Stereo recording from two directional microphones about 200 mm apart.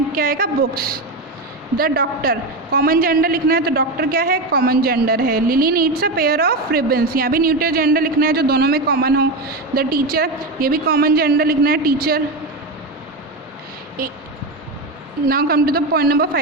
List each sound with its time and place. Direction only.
0.1 s a woman's voice: 45° right (ahead or behind)
14.0 s a woman's voice: 50° right (ahead or behind)
15.3 s a woman's voice: 50° right (ahead or behind)